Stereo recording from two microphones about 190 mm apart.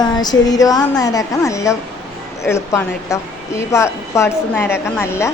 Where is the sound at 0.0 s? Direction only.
20° left (ahead or behind).